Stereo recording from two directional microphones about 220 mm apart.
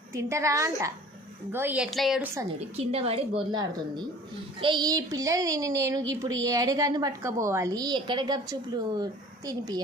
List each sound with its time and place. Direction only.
0.1 s a woman's voice: 15° right (ahead or behind)
2.6 s a woman's voice: 25° right (ahead or behind)